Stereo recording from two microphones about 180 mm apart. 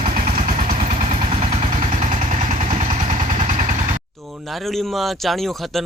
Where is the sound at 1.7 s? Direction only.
45° right (ahead or behind).